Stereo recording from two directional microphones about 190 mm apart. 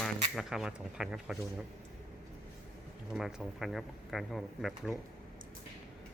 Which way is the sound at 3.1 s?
Centre (ahead or behind).